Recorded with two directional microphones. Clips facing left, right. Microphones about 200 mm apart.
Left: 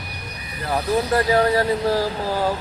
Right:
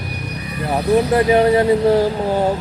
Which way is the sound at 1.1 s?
20° right (ahead or behind).